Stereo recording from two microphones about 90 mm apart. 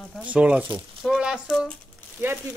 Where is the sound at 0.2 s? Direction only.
15° right (ahead or behind).